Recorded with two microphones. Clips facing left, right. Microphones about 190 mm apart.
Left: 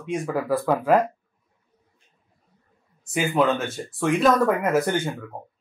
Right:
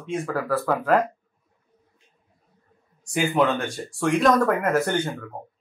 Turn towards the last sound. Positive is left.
turn(degrees=5)  # may be behind; listen again after turning